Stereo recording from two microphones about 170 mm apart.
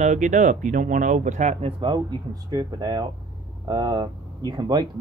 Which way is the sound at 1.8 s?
25° right (ahead or behind).